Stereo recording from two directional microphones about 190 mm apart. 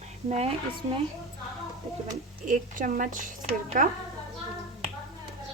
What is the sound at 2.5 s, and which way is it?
A woman's voice, 45° right (ahead or behind).